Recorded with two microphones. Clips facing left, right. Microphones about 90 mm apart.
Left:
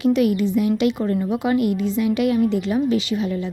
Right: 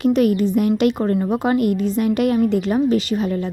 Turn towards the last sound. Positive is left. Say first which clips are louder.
# right 2 dB
turn(degrees=-45)  # may be behind; listen again after turning